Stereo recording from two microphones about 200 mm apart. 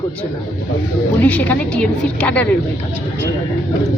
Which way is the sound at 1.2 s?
5° left (ahead or behind).